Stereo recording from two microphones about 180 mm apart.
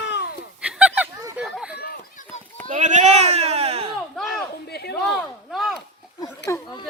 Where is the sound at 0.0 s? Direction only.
75° left (ahead or behind).